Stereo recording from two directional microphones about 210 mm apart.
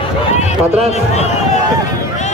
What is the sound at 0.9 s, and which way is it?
Speech, 30° left (ahead or behind).